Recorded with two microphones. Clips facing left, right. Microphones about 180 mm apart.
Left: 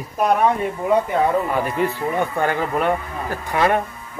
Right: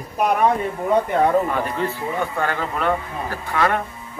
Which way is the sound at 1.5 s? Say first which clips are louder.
Left 2 dB; 10° left (ahead or behind).